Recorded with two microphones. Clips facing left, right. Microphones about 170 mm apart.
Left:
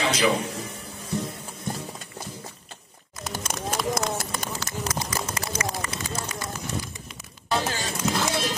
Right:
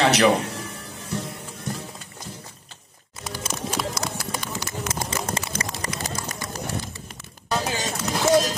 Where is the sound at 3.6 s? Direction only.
50° left (ahead or behind).